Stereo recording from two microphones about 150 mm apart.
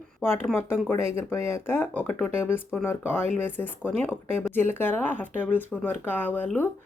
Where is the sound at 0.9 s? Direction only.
15° left (ahead or behind).